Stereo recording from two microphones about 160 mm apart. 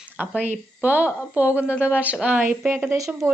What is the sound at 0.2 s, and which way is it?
A woman's voice, 10° right (ahead or behind).